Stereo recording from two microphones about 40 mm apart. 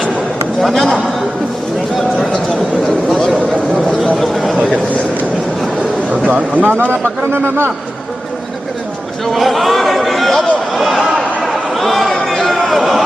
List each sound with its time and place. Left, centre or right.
0.6 s a man's voice: centre
4.2 s a sound: centre
6.1 s speech: right
7.0 s speech: right
9.2 s chatter: centre
10.8 s a man's voice: centre
11.4 s chatter: centre